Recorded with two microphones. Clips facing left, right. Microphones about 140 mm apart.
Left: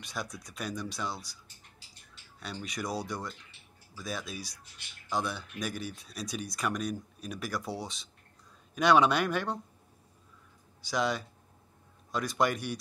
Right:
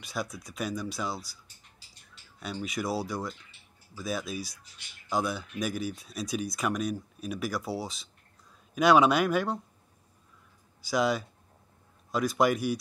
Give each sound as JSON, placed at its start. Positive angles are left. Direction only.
{"t": 0.0, "sound": "speech", "side_deg": -5}
{"t": 2.4, "sound": "speech", "side_deg": -5}
{"t": 10.8, "sound": "speech", "side_deg": -10}